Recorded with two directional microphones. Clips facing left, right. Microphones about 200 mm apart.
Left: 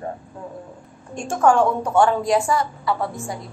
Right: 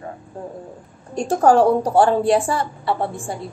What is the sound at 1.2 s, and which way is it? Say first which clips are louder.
A woman's voice: right 3 dB; 35° right (ahead or behind).